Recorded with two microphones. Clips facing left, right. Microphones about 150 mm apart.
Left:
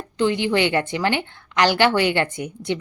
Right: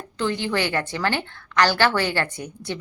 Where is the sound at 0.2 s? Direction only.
15° left (ahead or behind).